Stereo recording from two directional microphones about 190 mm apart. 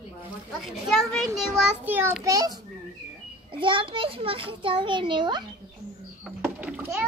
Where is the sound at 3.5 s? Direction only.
25° right (ahead or behind).